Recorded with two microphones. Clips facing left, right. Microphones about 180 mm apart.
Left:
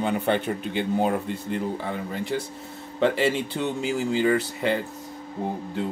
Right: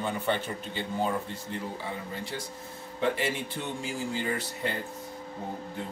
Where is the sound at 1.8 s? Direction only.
65° left (ahead or behind).